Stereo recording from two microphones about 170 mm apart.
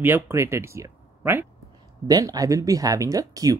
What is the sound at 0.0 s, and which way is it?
Speech, 15° right (ahead or behind).